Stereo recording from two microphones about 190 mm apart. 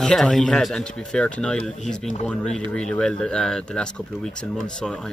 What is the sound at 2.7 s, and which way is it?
Speech, 5° left (ahead or behind).